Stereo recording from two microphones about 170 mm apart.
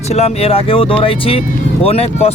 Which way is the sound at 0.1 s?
35° left (ahead or behind).